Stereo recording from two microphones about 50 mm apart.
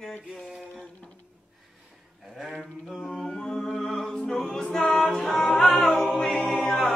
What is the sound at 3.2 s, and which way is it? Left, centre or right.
A capella, centre.